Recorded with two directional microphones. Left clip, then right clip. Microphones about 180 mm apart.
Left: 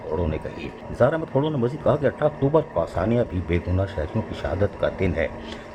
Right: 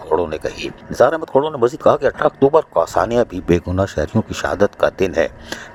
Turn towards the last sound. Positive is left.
turn(degrees=-50)  # may be behind; listen again after turning